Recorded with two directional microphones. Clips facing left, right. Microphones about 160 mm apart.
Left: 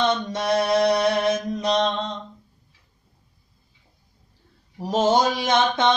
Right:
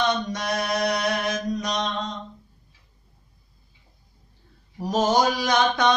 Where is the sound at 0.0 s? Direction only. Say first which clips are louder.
Left 2 dB; 30° left (ahead or behind).